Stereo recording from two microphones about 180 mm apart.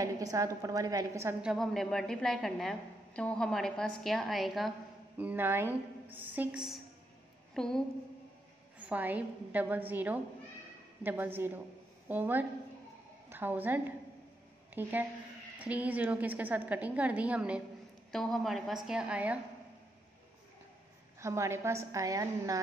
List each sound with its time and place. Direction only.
0.0 s a woman's voice: 20° right (ahead or behind)
1.4 s a woman's voice: centre (ahead or behind)
8.7 s a woman's voice: 10° right (ahead or behind)
21.2 s a woman's voice: 15° right (ahead or behind)